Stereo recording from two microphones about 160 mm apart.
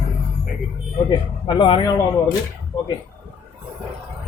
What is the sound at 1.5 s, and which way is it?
Speech, 30° left (ahead or behind).